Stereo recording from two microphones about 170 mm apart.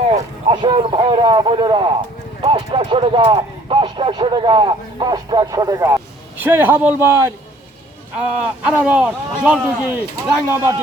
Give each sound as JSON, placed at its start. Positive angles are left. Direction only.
{"t": 0.0, "sound": "a man's voice", "side_deg": -35}